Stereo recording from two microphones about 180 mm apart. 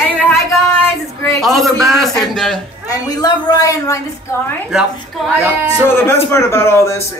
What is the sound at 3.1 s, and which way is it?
Speech, 20° left (ahead or behind).